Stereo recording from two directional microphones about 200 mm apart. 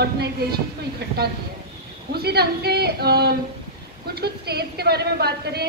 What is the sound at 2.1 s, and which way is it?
A woman's voice, 55° right (ahead or behind).